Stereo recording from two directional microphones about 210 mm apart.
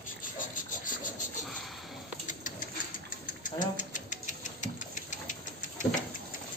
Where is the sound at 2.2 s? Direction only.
35° left (ahead or behind).